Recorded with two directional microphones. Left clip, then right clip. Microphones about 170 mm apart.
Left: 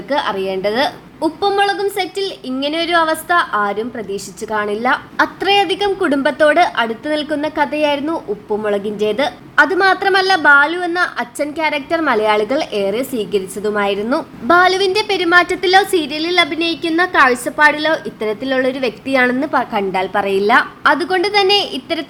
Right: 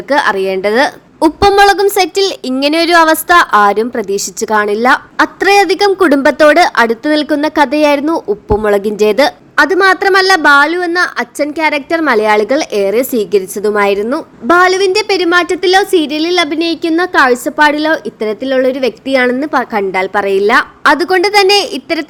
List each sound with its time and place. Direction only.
0.1 s a woman's voice: 35° right (ahead or behind)
1.2 s a woman's voice: 45° right (ahead or behind); by 22.0 s 30° right (ahead or behind)